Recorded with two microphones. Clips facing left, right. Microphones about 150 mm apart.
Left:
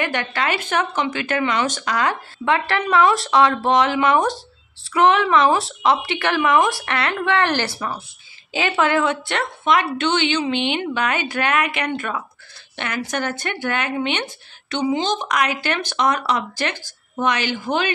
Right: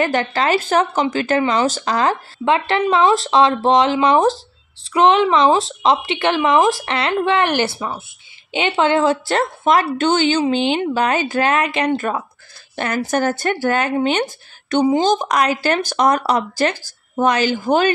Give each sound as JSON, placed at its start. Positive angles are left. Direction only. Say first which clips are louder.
{"t": 0.0, "sound": "speech", "louder": "right 5 dB", "side_deg": -35}